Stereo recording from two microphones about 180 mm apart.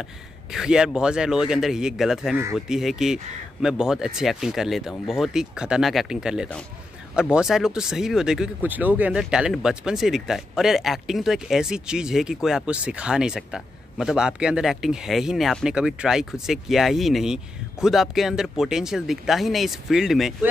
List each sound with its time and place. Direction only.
0.5 s speech: 5° right (ahead or behind)